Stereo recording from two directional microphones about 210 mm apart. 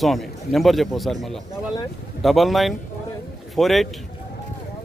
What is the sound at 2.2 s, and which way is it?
A man's voice, centre (ahead or behind).